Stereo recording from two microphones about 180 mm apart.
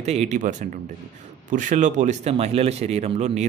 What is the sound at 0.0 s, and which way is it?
A man's voice, 35° right (ahead or behind).